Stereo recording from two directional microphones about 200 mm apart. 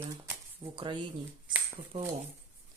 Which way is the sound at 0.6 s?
25° right (ahead or behind).